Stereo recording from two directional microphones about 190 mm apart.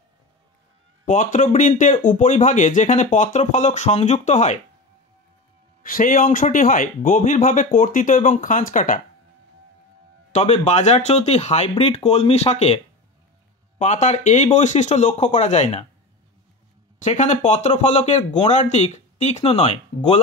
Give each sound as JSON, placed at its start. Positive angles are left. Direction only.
{"t": 1.0, "sound": "speech", "side_deg": 45}
{"t": 5.8, "sound": "speech", "side_deg": 45}
{"t": 10.3, "sound": "speech", "side_deg": 35}
{"t": 17.0, "sound": "speech", "side_deg": 40}